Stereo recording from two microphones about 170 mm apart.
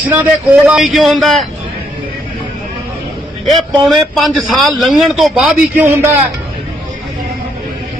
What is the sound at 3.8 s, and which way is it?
A man's voice, centre (ahead or behind).